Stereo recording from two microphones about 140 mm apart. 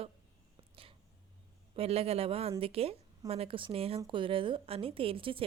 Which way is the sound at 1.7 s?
45° right (ahead or behind).